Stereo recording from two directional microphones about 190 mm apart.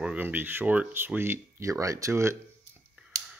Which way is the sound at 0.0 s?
5° right (ahead or behind).